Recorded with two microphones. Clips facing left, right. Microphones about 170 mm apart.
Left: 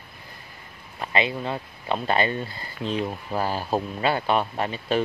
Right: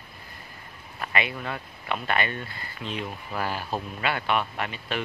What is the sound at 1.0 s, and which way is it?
Speech, 30° left (ahead or behind).